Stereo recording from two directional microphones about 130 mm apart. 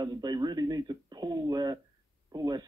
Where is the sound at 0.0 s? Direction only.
30° right (ahead or behind).